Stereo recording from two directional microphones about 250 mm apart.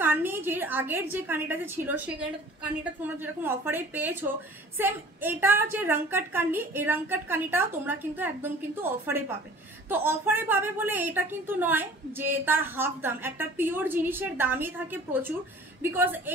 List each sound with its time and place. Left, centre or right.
0.0 s a woman's voice: centre